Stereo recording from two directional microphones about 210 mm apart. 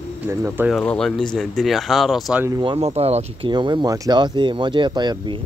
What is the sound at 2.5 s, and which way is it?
Speech, 25° right (ahead or behind).